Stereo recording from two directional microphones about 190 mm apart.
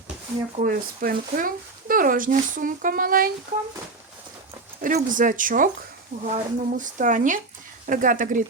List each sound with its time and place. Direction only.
0.5 s speech: 50° right (ahead or behind)
4.8 s speech: 40° right (ahead or behind)